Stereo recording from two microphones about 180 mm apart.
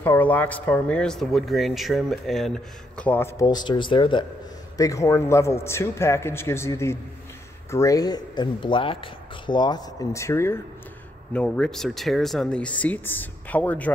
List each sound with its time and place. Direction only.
0.0 s speech: 10° left (ahead or behind)